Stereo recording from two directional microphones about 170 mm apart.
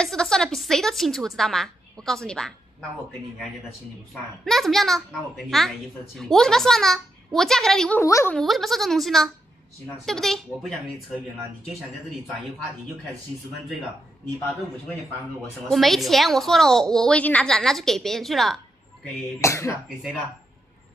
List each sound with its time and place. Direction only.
0.0 s a woman's voice: 5° left (ahead or behind)
4.1 s a woman's voice: centre (ahead or behind)
8.0 s a woman's voice: 15° left (ahead or behind)
8.4 s a woman's voice: centre (ahead or behind)
15.7 s a woman's voice: centre (ahead or behind)
19.4 s a woman's voice: 15° left (ahead or behind)